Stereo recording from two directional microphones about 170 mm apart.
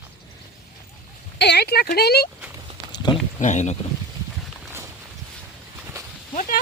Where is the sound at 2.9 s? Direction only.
25° left (ahead or behind).